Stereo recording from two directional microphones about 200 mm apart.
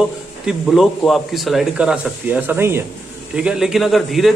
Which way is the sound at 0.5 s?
Centre (ahead or behind).